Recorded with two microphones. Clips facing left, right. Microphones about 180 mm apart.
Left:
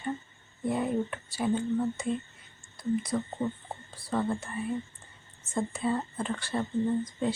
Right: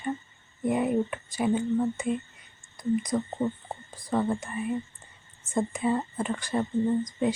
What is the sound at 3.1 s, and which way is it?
Speech, 10° right (ahead or behind).